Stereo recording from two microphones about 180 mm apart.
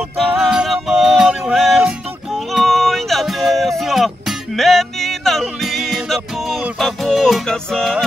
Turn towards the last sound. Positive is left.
turn(degrees=0)  # may be behind; listen again after turning